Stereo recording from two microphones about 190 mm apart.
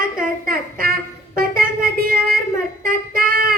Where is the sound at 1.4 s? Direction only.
50° right (ahead or behind).